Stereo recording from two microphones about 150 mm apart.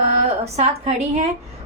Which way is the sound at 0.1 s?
45° right (ahead or behind).